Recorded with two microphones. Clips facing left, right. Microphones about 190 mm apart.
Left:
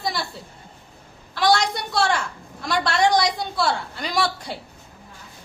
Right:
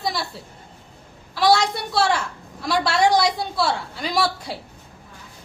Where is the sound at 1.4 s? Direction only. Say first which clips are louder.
Right 2 dB; 5° right (ahead or behind).